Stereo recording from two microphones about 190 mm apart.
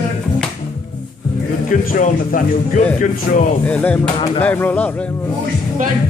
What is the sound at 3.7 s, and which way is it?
Speech, 5° left (ahead or behind).